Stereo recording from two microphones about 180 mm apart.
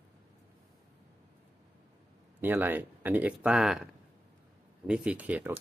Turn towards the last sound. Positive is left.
turn(degrees=-10)  # may be behind; listen again after turning